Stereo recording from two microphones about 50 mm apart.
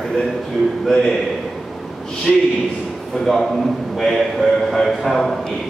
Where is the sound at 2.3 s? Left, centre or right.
Centre.